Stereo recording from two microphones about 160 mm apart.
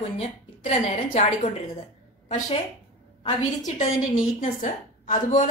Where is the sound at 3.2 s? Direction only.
50° left (ahead or behind).